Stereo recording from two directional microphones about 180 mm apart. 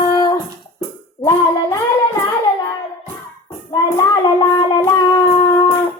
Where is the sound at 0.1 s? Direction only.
20° left (ahead or behind).